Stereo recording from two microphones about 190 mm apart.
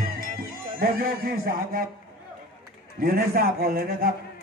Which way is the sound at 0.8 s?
50° right (ahead or behind).